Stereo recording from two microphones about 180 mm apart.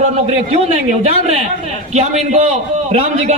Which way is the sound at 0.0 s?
40° right (ahead or behind).